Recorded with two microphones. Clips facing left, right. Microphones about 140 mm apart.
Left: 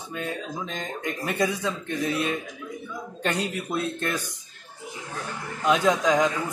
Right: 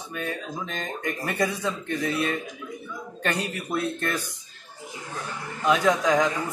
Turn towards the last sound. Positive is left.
turn(degrees=20)  # may be behind; listen again after turning